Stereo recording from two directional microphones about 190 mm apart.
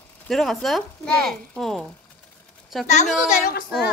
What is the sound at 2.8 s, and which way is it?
Speech, 40° left (ahead or behind).